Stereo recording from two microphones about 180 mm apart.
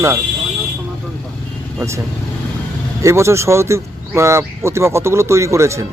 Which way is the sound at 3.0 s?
15° right (ahead or behind).